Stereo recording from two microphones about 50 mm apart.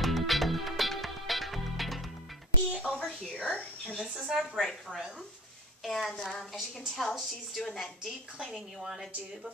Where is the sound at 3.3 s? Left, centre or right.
Left.